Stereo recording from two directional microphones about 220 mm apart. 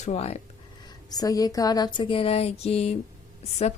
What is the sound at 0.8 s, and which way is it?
Speech, 15° left (ahead or behind).